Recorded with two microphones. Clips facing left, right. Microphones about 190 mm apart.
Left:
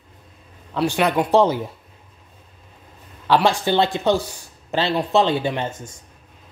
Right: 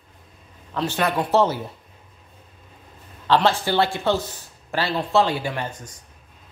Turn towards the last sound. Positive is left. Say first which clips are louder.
# left 4 dB
turn(degrees=25)  # may be behind; listen again after turning